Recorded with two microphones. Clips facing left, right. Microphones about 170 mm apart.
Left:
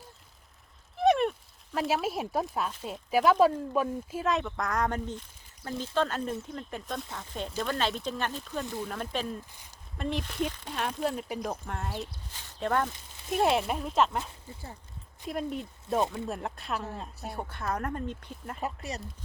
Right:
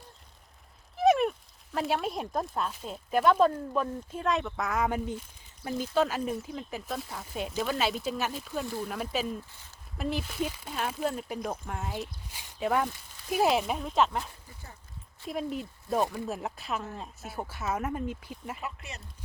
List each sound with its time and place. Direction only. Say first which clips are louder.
0.9 s speech: right 1 dB; centre (ahead or behind)
15.3 s speech: even; centre (ahead or behind)
18.6 s speech: left 5 dB; 40° left (ahead or behind)